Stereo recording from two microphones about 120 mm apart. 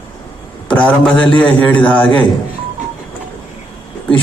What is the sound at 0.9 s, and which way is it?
A man's voice, 10° left (ahead or behind).